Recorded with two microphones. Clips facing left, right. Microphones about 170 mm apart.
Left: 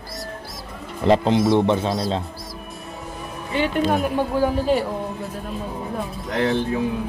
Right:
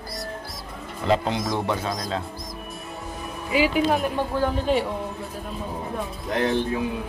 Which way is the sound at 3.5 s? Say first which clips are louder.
Even; 5° right (ahead or behind).